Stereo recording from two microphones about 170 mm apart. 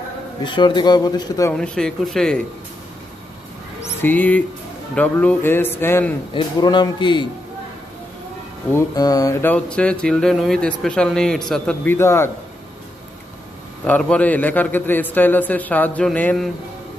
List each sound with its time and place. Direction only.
0.4 s speech: 25° left (ahead or behind)
1.5 s a sound: 5° left (ahead or behind)
4.0 s a man's voice: 10° left (ahead or behind)
6.3 s speech: 25° left (ahead or behind)
8.7 s a sound: 20° left (ahead or behind)
13.8 s a man's voice: 10° left (ahead or behind)